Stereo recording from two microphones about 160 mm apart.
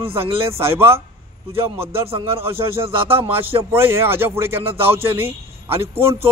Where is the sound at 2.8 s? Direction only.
35° right (ahead or behind).